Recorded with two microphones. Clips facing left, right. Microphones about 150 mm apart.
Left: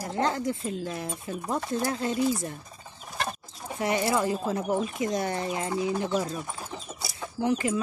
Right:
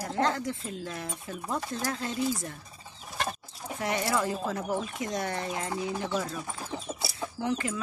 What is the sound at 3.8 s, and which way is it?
Speech, 10° left (ahead or behind).